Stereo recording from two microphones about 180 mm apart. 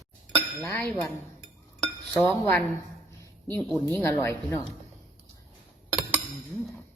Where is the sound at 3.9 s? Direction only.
15° left (ahead or behind).